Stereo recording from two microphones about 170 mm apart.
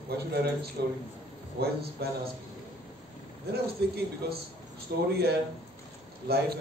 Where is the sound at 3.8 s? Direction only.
75° right (ahead or behind).